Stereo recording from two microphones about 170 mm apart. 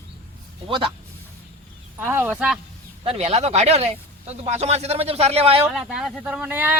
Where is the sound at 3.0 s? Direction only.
40° right (ahead or behind).